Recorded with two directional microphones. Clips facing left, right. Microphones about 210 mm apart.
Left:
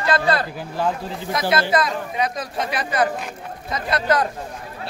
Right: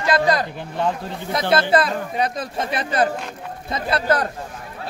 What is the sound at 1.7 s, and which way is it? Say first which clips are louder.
Speech: right 2 dB; 30° right (ahead or behind).